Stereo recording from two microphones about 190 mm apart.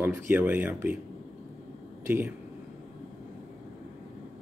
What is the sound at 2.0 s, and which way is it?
Speech, 10° right (ahead or behind).